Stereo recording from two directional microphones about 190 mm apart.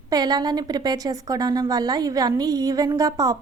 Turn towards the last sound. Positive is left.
turn(degrees=-15)  # may be behind; listen again after turning